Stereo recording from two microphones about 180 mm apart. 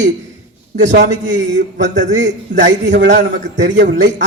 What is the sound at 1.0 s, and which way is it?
Speech, 80° right.